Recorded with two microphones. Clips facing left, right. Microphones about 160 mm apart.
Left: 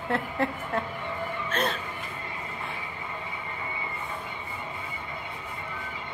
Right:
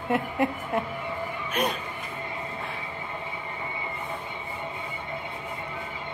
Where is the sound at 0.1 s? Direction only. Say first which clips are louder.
Right 3 dB; 15° right (ahead or behind).